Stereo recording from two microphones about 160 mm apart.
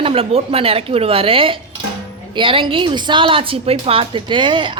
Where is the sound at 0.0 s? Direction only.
35° right (ahead or behind).